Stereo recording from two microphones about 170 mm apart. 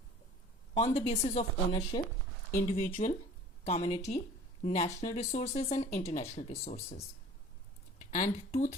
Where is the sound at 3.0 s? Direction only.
45° left (ahead or behind).